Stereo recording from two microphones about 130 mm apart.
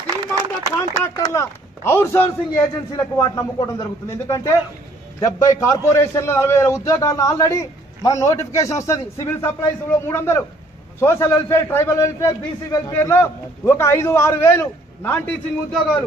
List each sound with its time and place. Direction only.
0.0 s a sound: 25° right (ahead or behind)
1.0 s a man's voice: 25° left (ahead or behind)
5.2 s a man's voice: 25° left (ahead or behind)
15.1 s a man's voice: 10° left (ahead or behind)